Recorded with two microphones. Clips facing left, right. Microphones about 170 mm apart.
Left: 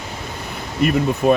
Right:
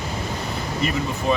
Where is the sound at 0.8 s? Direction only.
60° left (ahead or behind).